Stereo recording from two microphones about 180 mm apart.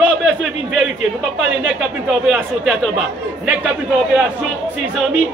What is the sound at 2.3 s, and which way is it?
Speech, 5° right (ahead or behind).